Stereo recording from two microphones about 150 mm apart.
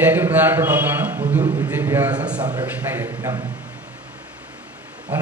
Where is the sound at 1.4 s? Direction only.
35° right (ahead or behind).